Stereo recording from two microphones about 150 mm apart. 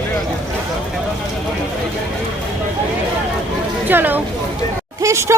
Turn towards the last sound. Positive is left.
turn(degrees=-20)  # may be behind; listen again after turning